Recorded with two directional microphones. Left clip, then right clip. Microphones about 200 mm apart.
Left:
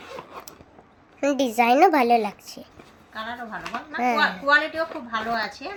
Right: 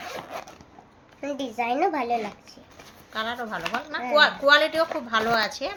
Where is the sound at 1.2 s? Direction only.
60° left (ahead or behind).